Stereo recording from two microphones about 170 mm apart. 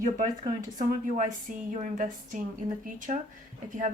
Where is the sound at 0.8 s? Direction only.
50° right (ahead or behind).